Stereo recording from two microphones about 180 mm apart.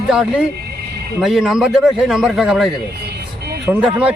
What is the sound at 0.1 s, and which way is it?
A man's voice, 5° right (ahead or behind).